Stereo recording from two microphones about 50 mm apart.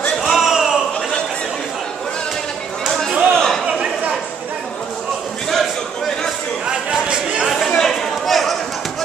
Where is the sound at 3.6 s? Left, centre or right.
Centre.